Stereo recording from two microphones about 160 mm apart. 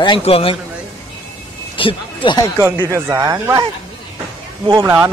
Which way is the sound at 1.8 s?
30° left (ahead or behind).